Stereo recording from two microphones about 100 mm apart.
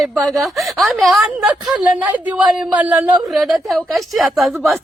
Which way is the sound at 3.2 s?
Centre (ahead or behind).